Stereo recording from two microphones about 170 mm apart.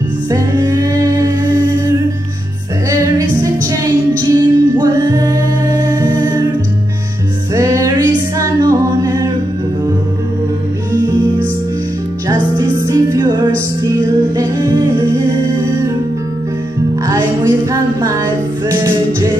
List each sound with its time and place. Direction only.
0.3 s music: 20° right (ahead or behind)
2.9 s music: 20° right (ahead or behind)
7.5 s music: 20° right (ahead or behind)
8.4 s a capella: 20° right (ahead or behind)
12.3 s music: 20° right (ahead or behind)
17.0 s music: 20° right (ahead or behind)